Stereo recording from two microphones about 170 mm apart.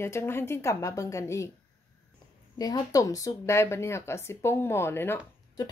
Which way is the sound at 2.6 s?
20° left (ahead or behind).